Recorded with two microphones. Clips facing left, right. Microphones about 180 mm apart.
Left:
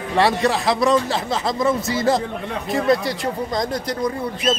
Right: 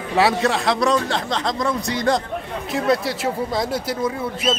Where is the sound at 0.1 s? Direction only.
Centre (ahead or behind).